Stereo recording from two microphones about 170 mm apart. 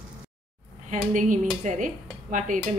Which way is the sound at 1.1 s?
50° right (ahead or behind).